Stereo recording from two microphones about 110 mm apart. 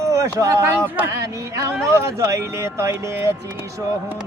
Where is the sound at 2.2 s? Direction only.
30° right (ahead or behind).